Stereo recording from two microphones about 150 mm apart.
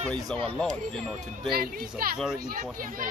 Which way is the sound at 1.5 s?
75° right (ahead or behind).